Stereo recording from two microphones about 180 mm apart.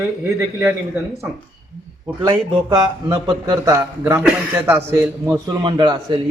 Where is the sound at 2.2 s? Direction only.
25° right (ahead or behind).